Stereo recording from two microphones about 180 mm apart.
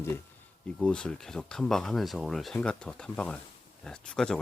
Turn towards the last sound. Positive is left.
turn(degrees=5)  # may be behind; listen again after turning